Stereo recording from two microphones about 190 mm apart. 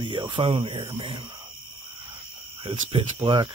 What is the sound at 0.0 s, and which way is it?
Speech, 25° right (ahead or behind).